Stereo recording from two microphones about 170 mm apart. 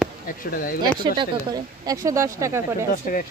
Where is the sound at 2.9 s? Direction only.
55° left (ahead or behind).